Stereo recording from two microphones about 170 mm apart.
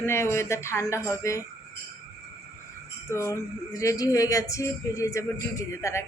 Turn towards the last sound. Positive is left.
turn(degrees=15)  # may be behind; listen again after turning